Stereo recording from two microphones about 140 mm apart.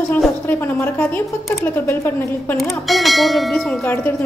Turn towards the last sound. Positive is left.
turn(degrees=15)  # may be behind; listen again after turning